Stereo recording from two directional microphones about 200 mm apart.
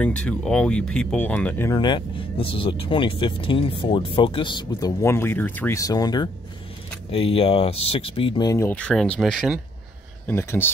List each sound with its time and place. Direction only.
0.0 s speech: 5° left (ahead or behind)
10.2 s speech: 10° left (ahead or behind)